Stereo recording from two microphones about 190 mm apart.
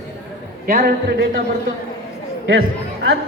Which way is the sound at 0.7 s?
50° right (ahead or behind).